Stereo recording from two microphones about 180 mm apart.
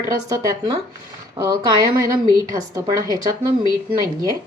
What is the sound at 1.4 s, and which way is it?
Speech, 30° right (ahead or behind).